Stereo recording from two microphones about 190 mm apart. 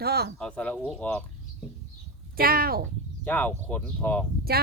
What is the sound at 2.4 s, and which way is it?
Speech, 50° right (ahead or behind).